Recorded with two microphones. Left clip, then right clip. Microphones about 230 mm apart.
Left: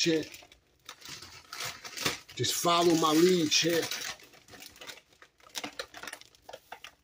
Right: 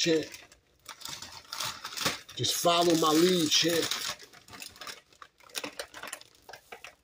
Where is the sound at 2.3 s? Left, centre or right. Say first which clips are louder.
Right 1 dB; centre.